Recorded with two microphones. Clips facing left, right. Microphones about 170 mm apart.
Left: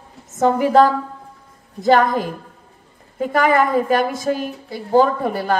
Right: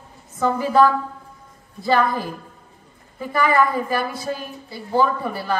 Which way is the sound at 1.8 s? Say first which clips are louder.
Left 5 dB; 45° left (ahead or behind).